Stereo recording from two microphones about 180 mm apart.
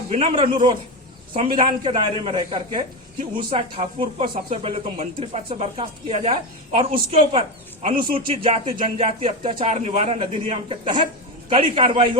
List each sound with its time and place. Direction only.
0.1 s a man's voice: 30° right (ahead or behind)